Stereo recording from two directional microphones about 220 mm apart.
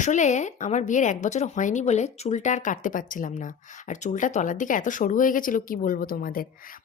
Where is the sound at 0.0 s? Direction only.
35° left (ahead or behind).